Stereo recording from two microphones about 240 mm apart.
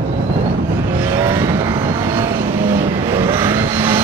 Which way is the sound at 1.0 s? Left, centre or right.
Centre.